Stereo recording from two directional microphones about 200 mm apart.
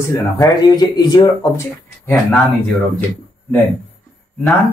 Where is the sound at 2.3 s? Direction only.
Centre (ahead or behind).